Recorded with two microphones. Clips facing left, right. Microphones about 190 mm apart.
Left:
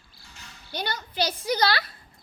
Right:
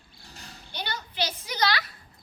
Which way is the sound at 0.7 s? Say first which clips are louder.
Left 4 dB; 45° left (ahead or behind).